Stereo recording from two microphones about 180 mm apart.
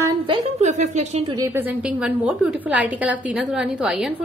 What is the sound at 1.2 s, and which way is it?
A woman's voice, 20° right (ahead or behind).